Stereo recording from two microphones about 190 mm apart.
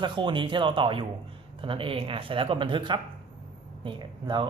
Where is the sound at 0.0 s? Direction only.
25° right (ahead or behind).